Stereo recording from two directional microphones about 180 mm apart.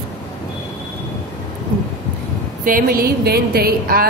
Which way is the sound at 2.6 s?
55° right (ahead or behind).